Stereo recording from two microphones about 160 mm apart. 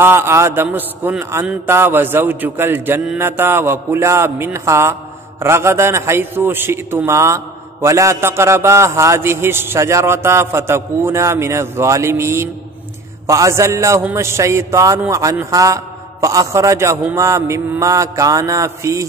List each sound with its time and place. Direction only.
0.0 s a man's voice: 15° right (ahead or behind)